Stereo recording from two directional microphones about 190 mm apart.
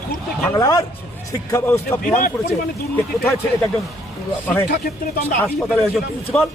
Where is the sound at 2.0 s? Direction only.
45° left (ahead or behind).